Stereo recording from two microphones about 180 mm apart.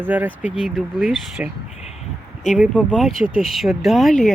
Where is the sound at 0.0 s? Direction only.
10° right (ahead or behind).